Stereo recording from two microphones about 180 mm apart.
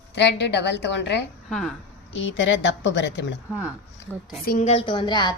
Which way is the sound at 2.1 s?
90° left.